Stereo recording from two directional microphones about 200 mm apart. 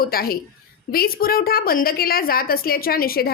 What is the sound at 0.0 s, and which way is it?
A woman's voice, 50° left (ahead or behind).